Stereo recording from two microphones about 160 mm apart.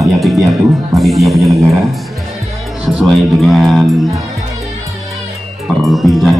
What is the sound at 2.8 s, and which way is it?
Speech, centre (ahead or behind).